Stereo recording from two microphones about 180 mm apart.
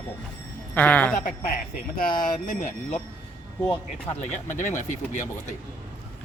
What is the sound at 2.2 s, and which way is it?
Speech, 45° left (ahead or behind).